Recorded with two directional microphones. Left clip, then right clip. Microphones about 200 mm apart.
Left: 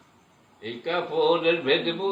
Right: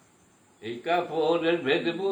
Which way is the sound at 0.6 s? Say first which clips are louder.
Right 1 dB; 20° right (ahead or behind).